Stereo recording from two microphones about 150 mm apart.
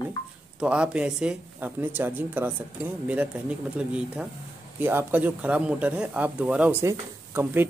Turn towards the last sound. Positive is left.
turn(degrees=-15)  # may be behind; listen again after turning